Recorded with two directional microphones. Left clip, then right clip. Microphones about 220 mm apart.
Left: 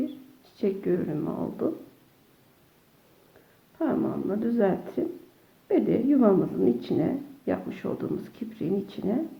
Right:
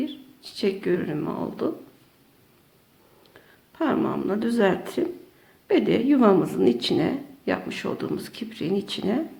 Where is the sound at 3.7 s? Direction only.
15° right (ahead or behind).